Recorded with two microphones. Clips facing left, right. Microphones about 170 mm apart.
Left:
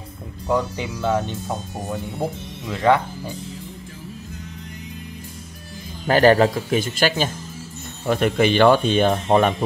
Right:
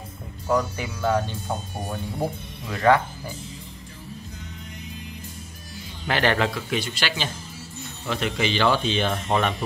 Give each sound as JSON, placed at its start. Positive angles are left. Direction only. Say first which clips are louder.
{"t": 0.5, "sound": "speech", "louder": "left 2 dB", "side_deg": 20}
{"t": 2.7, "sound": "speech", "louder": "left 1 dB", "side_deg": 20}
{"t": 6.0, "sound": "speech", "louder": "left 8 dB", "side_deg": 40}